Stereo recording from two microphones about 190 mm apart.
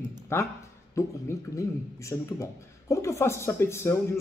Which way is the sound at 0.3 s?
15° left (ahead or behind).